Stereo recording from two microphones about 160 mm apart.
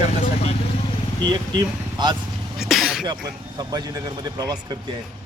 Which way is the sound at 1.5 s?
25° right (ahead or behind).